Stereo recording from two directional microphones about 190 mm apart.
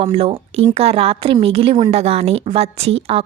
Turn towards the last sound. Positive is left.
turn(degrees=-30)  # may be behind; listen again after turning